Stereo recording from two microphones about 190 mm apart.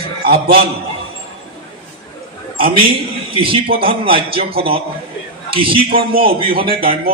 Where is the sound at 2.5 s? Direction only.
30° right (ahead or behind).